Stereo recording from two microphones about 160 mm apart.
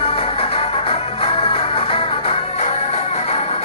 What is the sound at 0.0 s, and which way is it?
Music, 35° left (ahead or behind).